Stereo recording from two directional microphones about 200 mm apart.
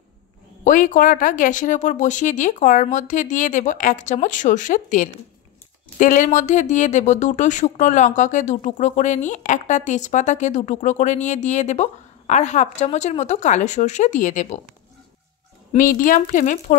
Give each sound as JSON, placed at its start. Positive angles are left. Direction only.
{"t": 0.7, "sound": "speech", "side_deg": 40}
{"t": 15.7, "sound": "speech", "side_deg": 40}